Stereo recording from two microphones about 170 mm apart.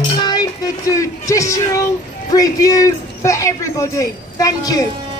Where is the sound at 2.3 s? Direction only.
20° left (ahead or behind).